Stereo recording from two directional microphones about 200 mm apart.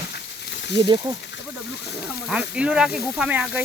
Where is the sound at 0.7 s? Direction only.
25° right (ahead or behind).